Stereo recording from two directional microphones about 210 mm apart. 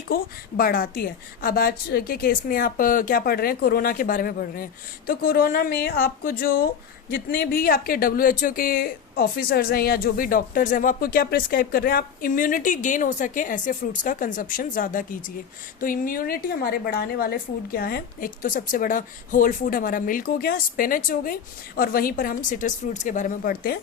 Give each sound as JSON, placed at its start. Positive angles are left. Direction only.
{"t": 0.1, "sound": "a woman's voice", "side_deg": 45}